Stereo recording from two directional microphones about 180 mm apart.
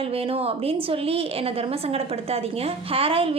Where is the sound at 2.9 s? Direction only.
30° right (ahead or behind).